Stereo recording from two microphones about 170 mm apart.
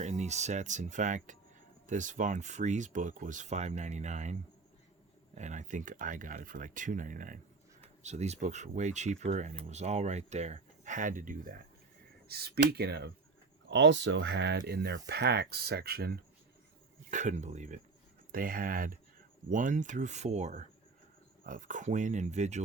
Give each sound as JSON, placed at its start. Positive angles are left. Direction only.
{"t": 0.0, "sound": "speech", "side_deg": -40}
{"t": 8.0, "sound": "speech", "side_deg": -40}
{"t": 12.3, "sound": "speech", "side_deg": -70}
{"t": 13.7, "sound": "speech", "side_deg": -90}
{"t": 17.1, "sound": "speech", "side_deg": -45}
{"t": 18.3, "sound": "speech", "side_deg": -55}